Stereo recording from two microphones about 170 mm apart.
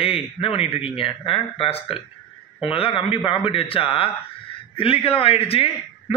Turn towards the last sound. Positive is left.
turn(degrees=35)  # may be behind; listen again after turning